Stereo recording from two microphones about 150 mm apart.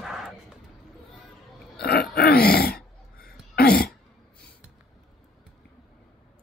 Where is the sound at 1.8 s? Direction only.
90° left.